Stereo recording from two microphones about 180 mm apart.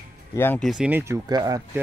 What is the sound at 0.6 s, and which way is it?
A man's voice, centre (ahead or behind).